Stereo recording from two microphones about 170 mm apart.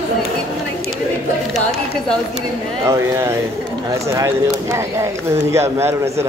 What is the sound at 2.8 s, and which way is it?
Speech, 15° right (ahead or behind).